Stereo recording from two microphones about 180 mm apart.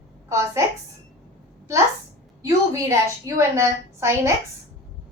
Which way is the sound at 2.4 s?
15° right (ahead or behind).